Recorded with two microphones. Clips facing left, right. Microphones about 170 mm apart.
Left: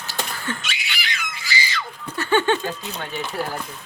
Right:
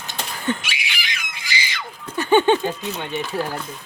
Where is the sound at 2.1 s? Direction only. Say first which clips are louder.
Right 4 dB; 15° right (ahead or behind).